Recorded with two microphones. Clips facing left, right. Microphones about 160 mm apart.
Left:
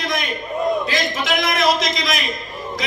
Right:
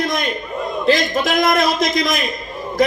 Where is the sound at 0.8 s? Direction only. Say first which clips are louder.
Right 6 dB; 50° right (ahead or behind).